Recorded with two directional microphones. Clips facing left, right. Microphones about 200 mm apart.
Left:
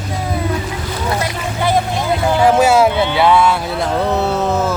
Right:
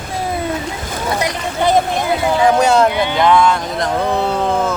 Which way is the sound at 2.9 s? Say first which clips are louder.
Left 1 dB; 15° right (ahead or behind).